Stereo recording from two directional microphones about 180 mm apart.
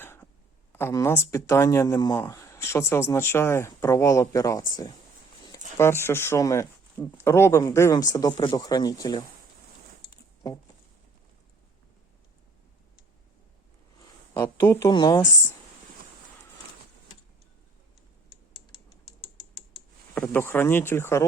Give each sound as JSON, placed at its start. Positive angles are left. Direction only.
{"t": 0.0, "sound": "a sound", "side_deg": 10}
{"t": 0.7, "sound": "speech", "side_deg": 15}
{"t": 14.3, "sound": "speech", "side_deg": 15}
{"t": 20.1, "sound": "speech", "side_deg": 10}